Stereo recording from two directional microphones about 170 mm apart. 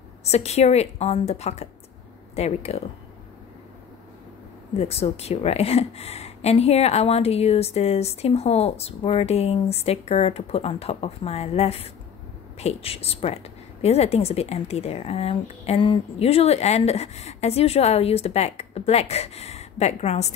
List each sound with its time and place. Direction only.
0.2 s a woman's voice: 40° left (ahead or behind)
4.7 s a woman's voice: 35° left (ahead or behind)